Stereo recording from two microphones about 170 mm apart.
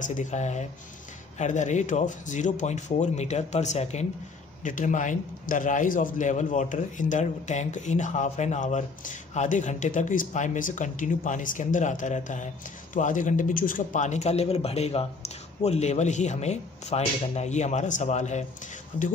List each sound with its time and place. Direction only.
0.0 s a man's voice: 45° left (ahead or behind)